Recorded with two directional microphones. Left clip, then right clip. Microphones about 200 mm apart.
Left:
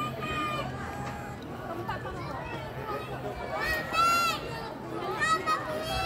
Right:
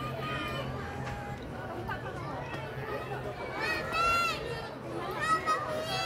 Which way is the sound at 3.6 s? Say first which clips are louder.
Left 3 dB; 45° left (ahead or behind).